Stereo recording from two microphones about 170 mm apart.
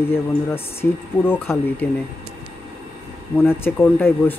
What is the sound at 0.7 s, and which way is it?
Speech, 15° left (ahead or behind).